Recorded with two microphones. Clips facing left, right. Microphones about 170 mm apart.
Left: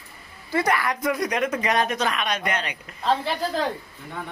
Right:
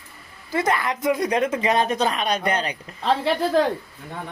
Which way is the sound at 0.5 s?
25° right (ahead or behind).